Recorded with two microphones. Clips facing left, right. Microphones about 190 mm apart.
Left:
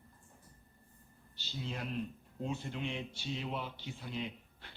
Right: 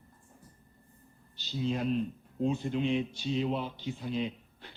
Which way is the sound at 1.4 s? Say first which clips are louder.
Right 10 dB; 20° right (ahead or behind).